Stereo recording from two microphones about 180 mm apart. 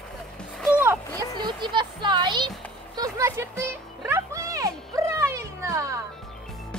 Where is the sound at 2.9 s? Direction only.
20° right (ahead or behind).